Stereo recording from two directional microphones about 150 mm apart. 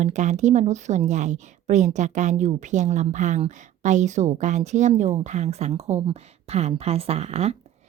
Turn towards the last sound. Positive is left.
turn(degrees=-45)  # may be behind; listen again after turning